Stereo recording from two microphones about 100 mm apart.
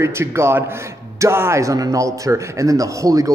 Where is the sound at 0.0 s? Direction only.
25° right (ahead or behind).